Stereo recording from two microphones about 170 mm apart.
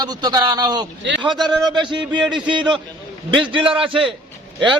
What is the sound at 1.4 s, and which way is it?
Speech, centre (ahead or behind).